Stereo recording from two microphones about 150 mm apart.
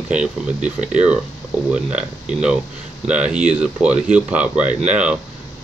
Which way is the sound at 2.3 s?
5° right (ahead or behind).